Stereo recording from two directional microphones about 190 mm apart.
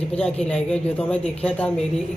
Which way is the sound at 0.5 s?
5° left (ahead or behind).